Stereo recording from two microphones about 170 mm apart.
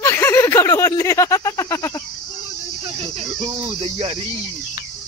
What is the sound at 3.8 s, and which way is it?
Speech, 40° right (ahead or behind).